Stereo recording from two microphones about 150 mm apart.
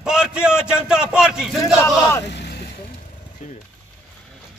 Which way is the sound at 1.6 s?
20° left (ahead or behind).